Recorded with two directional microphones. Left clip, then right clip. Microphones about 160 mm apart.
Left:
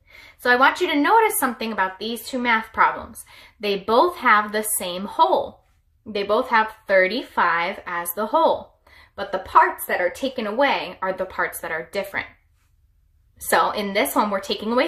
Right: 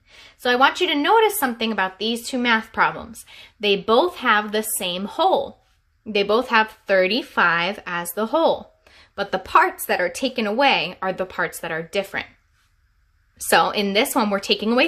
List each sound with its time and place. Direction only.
0.1 s a woman's voice: 40° right (ahead or behind)
13.5 s a woman's voice: 45° right (ahead or behind)